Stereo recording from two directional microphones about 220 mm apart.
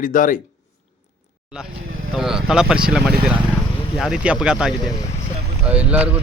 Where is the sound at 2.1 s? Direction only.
Centre (ahead or behind).